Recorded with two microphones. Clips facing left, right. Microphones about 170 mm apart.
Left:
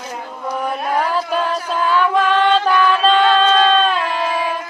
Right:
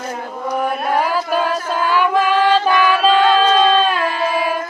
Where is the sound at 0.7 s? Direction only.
5° right (ahead or behind).